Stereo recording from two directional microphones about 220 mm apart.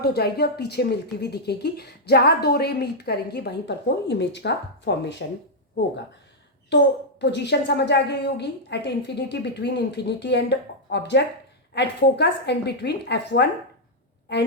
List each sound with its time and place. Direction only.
0.0 s a woman's voice: 45° left (ahead or behind)
6.7 s a woman's voice: 50° left (ahead or behind)